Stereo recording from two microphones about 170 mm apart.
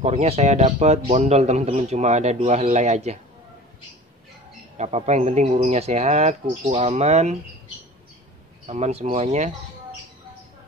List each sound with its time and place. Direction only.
0.0 s a man's voice: 40° right (ahead or behind)
4.7 s a man's voice: 40° right (ahead or behind)
8.6 s a man's voice: 40° right (ahead or behind)